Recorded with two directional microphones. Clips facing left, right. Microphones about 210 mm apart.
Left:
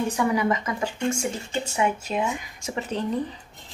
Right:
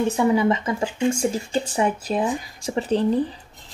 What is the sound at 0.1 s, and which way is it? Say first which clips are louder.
Speech: right 4 dB; 25° right (ahead or behind).